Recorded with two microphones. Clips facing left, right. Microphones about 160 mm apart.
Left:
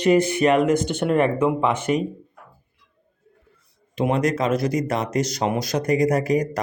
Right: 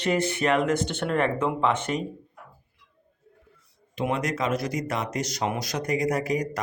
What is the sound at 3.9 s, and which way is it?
Speech, 35° left (ahead or behind).